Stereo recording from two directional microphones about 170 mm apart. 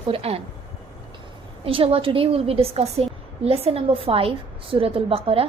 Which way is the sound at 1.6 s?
35° right (ahead or behind).